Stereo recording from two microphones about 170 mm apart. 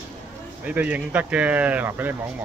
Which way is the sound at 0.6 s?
10° right (ahead or behind).